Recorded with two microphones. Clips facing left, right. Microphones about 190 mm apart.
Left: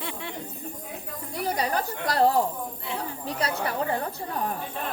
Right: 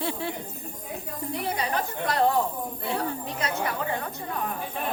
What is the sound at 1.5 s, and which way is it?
Chatter, 40° left (ahead or behind).